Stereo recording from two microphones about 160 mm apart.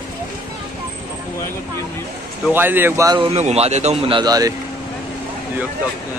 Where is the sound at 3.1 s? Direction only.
40° right (ahead or behind).